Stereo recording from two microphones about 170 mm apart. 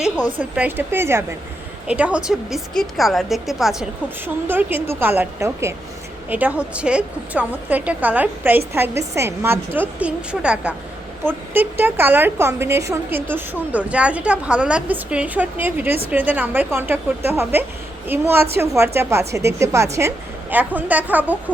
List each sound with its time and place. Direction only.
0.5 s a woman's voice: 10° right (ahead or behind)